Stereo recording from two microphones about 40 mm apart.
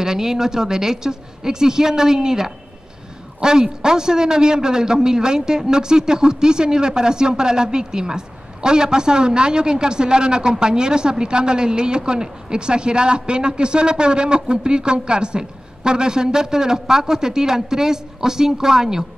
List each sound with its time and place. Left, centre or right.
0.0 s a man's voice: centre